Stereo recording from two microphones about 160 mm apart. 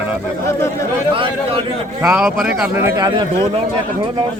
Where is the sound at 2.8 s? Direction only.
25° right (ahead or behind).